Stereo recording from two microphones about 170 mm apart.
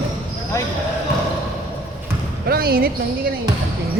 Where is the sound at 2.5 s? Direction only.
65° right (ahead or behind).